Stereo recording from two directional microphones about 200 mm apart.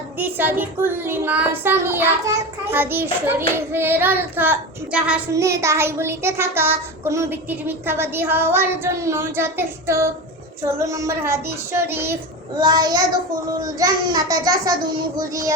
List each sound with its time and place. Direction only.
0.2 s child singing: 10° right (ahead or behind)